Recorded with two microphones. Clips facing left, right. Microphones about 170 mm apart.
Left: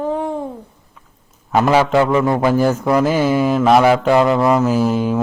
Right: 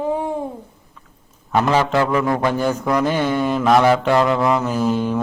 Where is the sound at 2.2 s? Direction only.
20° left (ahead or behind).